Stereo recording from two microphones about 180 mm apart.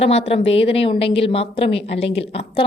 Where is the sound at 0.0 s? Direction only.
35° left (ahead or behind).